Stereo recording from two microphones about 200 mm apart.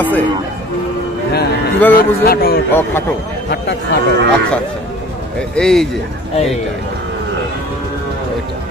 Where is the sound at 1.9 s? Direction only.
50° left (ahead or behind).